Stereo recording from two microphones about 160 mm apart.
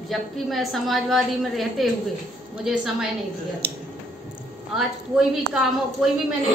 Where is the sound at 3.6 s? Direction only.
90° right.